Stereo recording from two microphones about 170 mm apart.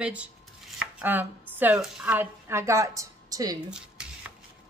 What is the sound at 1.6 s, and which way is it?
A woman's voice, 10° right (ahead or behind).